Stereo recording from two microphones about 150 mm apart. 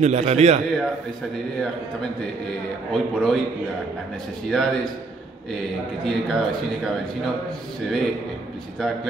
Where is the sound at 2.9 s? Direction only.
Centre (ahead or behind).